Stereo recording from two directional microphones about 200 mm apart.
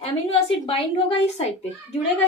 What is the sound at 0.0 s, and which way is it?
Speech, 25° left (ahead or behind).